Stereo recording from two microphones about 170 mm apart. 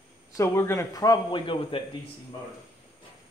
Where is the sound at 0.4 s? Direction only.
15° left (ahead or behind).